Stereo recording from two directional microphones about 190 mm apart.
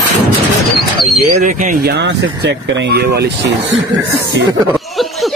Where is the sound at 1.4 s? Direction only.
40° right (ahead or behind).